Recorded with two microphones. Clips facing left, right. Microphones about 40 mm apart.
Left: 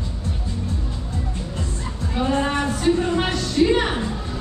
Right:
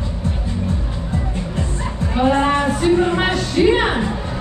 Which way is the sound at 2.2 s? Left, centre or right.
Right.